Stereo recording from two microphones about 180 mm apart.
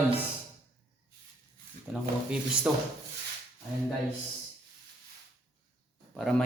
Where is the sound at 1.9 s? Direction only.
10° right (ahead or behind).